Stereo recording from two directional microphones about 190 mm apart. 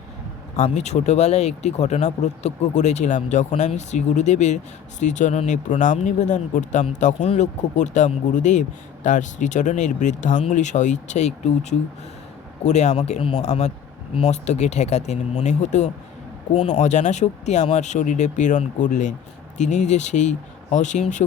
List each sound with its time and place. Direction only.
0.5 s speech: 35° left (ahead or behind)